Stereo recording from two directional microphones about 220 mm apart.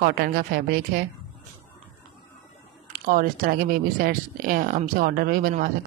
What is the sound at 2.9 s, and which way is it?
Speech, 40° right (ahead or behind).